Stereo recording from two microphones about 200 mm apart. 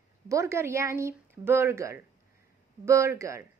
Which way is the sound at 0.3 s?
15° right (ahead or behind).